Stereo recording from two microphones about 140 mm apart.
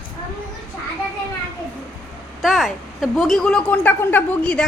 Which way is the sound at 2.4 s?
Centre (ahead or behind).